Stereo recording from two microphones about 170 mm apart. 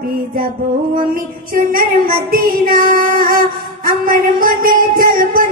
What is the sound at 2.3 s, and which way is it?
Child singing, 60° right (ahead or behind).